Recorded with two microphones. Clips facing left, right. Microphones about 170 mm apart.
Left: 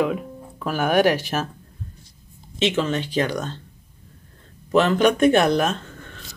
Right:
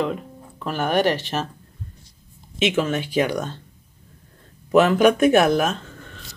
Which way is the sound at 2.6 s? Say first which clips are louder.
Right 1 dB; 10° right (ahead or behind).